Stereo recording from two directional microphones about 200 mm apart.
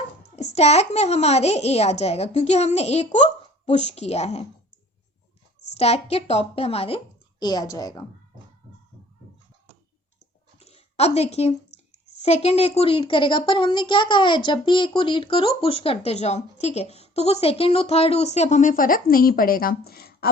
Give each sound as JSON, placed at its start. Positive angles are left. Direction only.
{"t": 0.3, "sound": "speech", "side_deg": 35}
{"t": 5.7, "sound": "speech", "side_deg": 30}
{"t": 10.6, "sound": "a sound", "side_deg": 30}
{"t": 12.2, "sound": "speech", "side_deg": 30}